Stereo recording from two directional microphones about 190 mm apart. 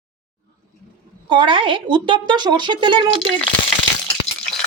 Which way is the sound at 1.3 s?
25° right (ahead or behind).